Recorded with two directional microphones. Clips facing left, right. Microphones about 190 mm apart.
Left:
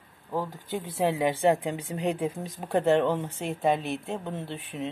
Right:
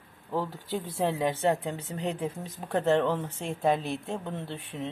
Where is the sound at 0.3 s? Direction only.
15° left (ahead or behind).